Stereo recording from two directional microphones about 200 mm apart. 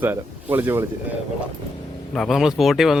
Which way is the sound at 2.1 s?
Centre (ahead or behind).